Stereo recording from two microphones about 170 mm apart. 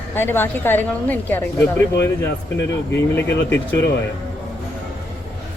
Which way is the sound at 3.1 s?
15° left (ahead or behind).